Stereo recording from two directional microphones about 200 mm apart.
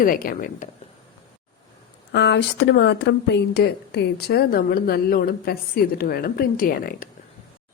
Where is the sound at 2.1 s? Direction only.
60° left (ahead or behind).